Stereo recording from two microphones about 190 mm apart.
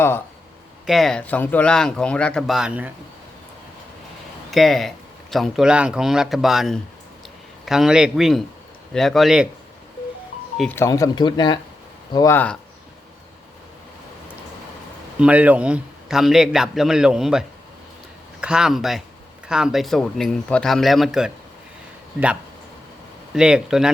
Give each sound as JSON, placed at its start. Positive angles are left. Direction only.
{"t": 0.9, "sound": "speech", "side_deg": 0}
{"t": 4.5, "sound": "speech", "side_deg": 0}
{"t": 10.6, "sound": "speech", "side_deg": 10}
{"t": 15.2, "sound": "speech", "side_deg": -10}
{"t": 23.3, "sound": "speech", "side_deg": -5}